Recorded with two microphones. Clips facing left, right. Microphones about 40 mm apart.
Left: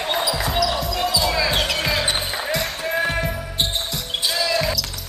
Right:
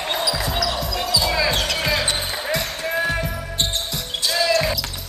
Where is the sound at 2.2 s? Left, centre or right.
Centre.